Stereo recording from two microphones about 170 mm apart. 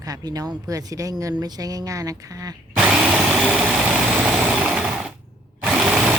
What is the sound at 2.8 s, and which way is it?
Tools, 5° right (ahead or behind).